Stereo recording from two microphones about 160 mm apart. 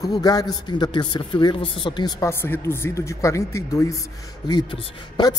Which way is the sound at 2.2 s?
15° left (ahead or behind).